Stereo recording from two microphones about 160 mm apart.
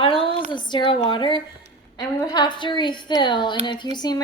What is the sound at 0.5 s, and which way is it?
A woman's voice, 30° left (ahead or behind).